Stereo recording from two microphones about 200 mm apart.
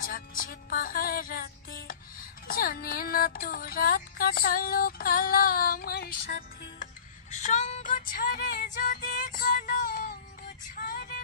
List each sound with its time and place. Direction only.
0.0 s music: 45° left (ahead or behind)
10.8 s vehicle: 45° left (ahead or behind)